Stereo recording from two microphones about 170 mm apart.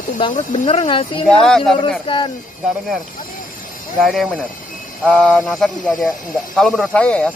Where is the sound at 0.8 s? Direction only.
30° left (ahead or behind).